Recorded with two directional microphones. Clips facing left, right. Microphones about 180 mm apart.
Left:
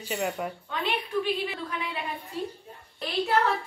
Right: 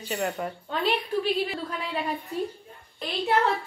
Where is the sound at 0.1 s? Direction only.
5° left (ahead or behind).